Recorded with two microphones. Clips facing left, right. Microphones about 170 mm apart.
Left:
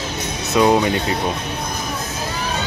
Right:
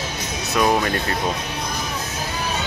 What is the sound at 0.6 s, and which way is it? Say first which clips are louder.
Speech: left 4 dB; 15° left (ahead or behind).